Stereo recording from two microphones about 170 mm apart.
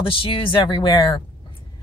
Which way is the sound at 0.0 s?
30° left (ahead or behind).